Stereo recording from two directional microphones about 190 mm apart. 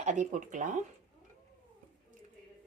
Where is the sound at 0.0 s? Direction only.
40° right (ahead or behind).